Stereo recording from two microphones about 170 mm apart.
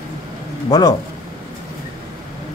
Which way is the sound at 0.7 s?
20° left (ahead or behind).